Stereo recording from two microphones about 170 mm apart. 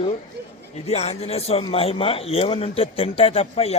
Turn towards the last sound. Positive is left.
turn(degrees=35)  # may be behind; listen again after turning